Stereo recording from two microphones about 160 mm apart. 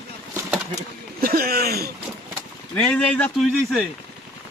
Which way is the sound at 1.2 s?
70° right (ahead or behind).